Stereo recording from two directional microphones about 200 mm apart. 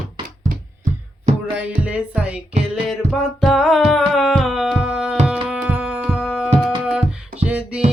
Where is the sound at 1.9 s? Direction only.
5° right (ahead or behind).